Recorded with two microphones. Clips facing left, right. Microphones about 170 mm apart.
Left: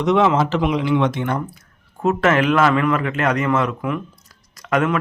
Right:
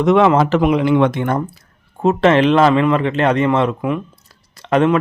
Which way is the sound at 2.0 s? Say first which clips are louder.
Right 4 dB; 25° right (ahead or behind).